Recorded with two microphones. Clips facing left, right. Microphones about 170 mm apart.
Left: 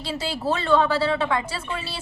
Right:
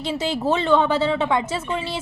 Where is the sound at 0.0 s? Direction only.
20° right (ahead or behind).